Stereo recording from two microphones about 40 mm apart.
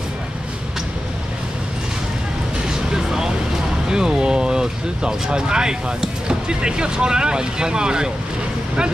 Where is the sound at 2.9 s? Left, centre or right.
Centre.